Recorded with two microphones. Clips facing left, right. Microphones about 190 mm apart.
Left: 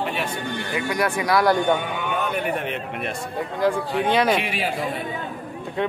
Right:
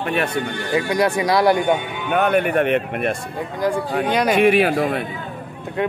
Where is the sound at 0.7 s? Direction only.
30° right (ahead or behind).